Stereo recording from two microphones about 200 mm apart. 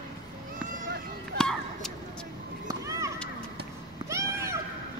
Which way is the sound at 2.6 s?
15° right (ahead or behind).